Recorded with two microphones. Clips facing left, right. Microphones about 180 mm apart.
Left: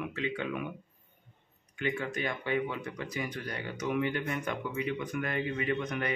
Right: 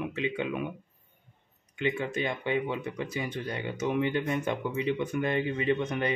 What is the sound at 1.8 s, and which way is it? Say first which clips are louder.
Speech: right 3 dB; 20° right (ahead or behind).